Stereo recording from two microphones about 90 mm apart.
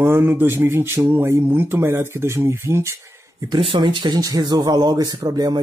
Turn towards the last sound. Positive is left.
turn(degrees=-45)  # may be behind; listen again after turning